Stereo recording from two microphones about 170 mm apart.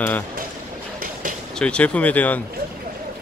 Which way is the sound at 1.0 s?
55° right (ahead or behind).